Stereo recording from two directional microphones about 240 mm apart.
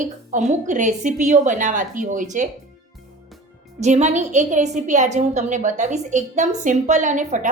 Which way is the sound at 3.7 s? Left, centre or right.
Right.